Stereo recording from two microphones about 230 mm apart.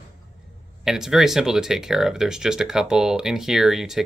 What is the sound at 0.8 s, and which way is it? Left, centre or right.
Speech, centre.